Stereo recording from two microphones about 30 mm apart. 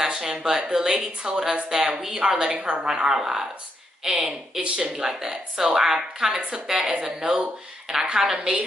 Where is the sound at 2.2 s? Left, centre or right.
Right.